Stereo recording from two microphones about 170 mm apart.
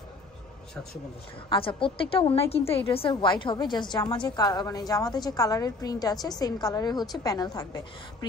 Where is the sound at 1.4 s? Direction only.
30° left (ahead or behind).